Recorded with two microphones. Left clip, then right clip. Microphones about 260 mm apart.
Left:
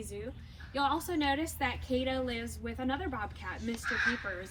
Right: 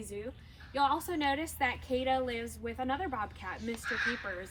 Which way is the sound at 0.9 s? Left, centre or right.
Right.